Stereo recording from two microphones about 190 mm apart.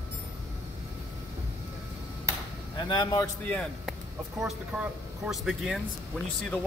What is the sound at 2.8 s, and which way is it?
Speech, 25° left (ahead or behind).